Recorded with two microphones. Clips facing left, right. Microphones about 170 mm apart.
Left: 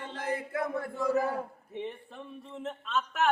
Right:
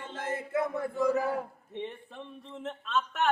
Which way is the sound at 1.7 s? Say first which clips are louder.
Even; 5° left (ahead or behind).